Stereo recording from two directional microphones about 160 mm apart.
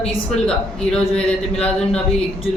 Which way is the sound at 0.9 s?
5° left (ahead or behind).